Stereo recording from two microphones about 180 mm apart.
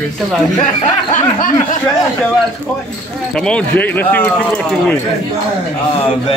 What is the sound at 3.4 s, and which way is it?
A man's voice, 5° left (ahead or behind).